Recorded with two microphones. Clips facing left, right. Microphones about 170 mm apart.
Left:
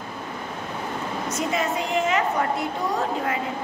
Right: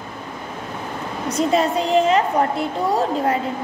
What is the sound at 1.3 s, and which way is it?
Speech, 35° right (ahead or behind).